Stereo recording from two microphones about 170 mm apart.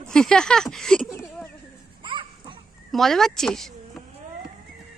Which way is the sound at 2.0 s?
30° right (ahead or behind).